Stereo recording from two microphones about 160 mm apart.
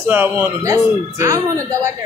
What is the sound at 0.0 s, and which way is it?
Speech, 15° right (ahead or behind).